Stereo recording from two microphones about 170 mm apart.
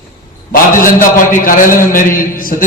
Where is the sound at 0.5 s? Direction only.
55° left (ahead or behind).